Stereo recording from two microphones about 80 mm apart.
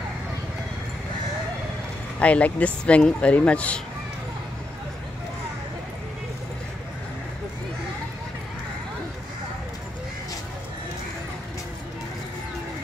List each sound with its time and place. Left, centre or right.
2.1 s speech: centre